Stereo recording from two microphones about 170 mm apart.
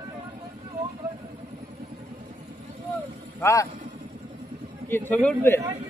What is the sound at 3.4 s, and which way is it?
Speech, 20° left (ahead or behind).